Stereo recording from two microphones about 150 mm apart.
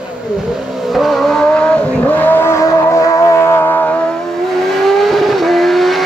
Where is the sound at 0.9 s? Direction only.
Centre (ahead or behind).